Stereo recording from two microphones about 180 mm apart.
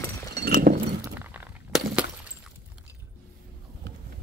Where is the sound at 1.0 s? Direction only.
10° right (ahead or behind).